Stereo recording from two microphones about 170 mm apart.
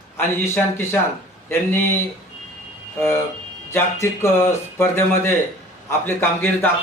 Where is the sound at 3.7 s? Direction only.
15° left (ahead or behind).